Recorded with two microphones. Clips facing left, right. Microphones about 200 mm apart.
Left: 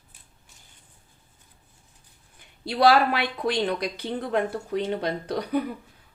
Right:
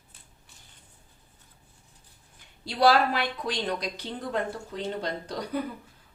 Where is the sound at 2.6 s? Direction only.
60° left (ahead or behind).